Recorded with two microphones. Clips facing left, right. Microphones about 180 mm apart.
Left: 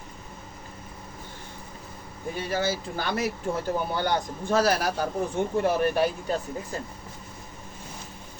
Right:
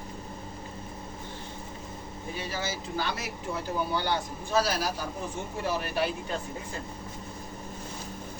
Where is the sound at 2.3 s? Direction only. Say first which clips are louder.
Left 7 dB; 50° left (ahead or behind).